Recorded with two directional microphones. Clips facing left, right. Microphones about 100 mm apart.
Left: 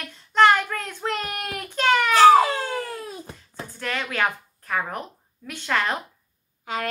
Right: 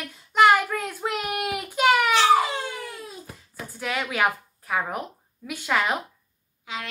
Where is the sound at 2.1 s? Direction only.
45° left (ahead or behind).